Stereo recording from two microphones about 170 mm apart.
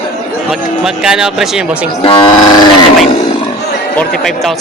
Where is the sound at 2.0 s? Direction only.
30° left (ahead or behind).